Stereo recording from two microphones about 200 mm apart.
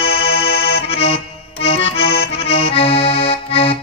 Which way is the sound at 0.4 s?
30° left (ahead or behind).